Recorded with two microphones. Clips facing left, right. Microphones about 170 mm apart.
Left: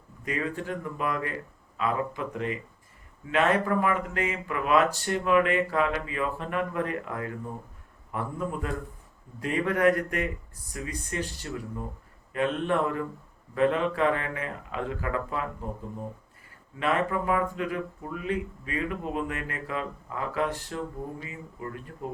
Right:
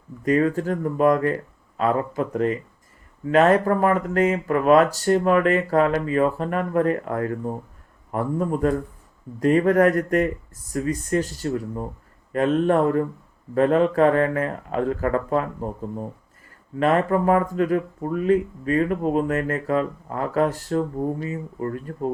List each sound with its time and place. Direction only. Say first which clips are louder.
0.3 s speech: right 11 dB; 40° right (ahead or behind)
16.8 s speech: right 7 dB; 45° right (ahead or behind)